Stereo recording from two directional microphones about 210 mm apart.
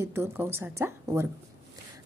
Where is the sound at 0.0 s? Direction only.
10° right (ahead or behind).